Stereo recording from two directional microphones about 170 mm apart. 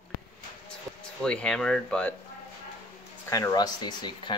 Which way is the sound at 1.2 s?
5° left (ahead or behind).